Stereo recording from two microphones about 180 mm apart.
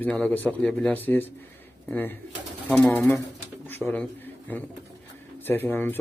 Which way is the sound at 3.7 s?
10° left (ahead or behind).